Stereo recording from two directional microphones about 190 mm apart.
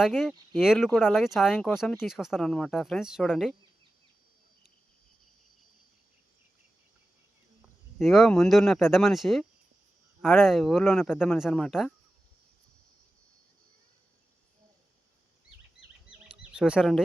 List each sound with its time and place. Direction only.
0.0 s speech: centre (ahead or behind)
7.9 s speech: centre (ahead or behind)
16.3 s bird: 5° right (ahead or behind)